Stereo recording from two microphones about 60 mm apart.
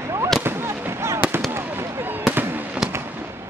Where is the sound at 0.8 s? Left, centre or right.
Right.